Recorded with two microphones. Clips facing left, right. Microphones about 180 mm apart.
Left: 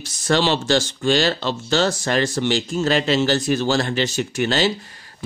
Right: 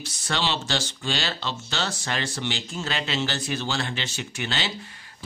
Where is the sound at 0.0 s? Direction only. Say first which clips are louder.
Left 9 dB; 45° left (ahead or behind).